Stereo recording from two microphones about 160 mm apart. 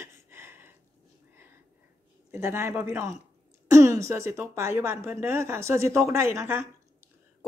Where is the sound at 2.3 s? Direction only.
15° right (ahead or behind).